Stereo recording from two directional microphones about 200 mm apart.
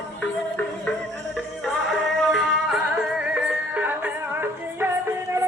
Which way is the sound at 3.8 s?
10° right (ahead or behind).